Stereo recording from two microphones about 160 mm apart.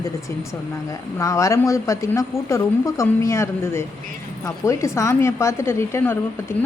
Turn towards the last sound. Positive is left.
turn(degrees=15)  # may be behind; listen again after turning